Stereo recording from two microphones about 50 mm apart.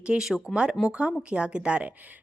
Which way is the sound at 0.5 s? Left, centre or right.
Centre.